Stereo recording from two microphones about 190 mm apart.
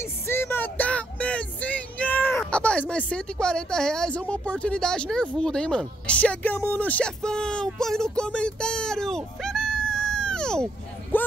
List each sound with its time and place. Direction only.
0.3 s child singing: 10° left (ahead or behind)